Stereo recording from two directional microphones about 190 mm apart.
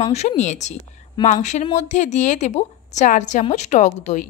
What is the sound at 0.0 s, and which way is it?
A woman's voice, 35° left (ahead or behind).